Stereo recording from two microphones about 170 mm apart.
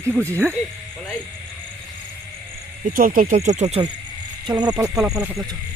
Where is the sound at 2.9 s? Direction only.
55° right (ahead or behind).